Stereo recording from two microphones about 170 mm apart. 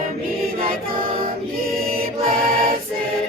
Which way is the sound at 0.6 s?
60° right (ahead or behind).